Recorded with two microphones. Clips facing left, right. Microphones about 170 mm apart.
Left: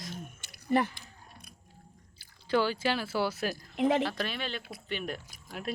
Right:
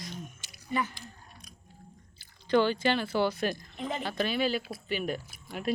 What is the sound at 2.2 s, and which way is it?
Speech, 5° left (ahead or behind).